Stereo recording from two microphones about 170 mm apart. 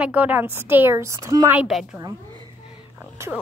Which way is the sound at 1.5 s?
5° right (ahead or behind).